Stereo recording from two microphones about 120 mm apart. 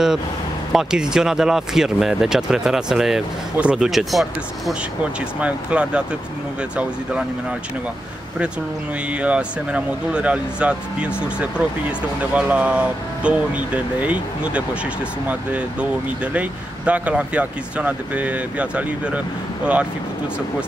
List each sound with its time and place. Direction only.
0.7 s speech: 5° right (ahead or behind)
9.2 s speech: 10° right (ahead or behind)